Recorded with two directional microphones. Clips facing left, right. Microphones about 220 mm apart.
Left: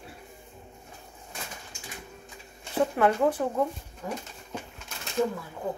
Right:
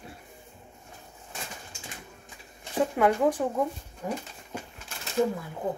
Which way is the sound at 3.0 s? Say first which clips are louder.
Right 1 dB; 15° right (ahead or behind).